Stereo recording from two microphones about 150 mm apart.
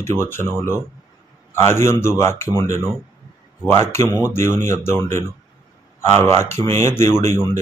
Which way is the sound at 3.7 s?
15° left (ahead or behind).